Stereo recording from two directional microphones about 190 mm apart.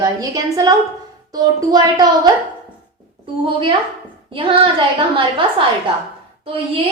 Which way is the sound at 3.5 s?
25° right (ahead or behind).